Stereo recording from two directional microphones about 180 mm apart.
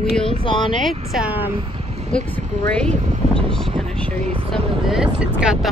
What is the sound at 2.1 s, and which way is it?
Speech, 5° left (ahead or behind).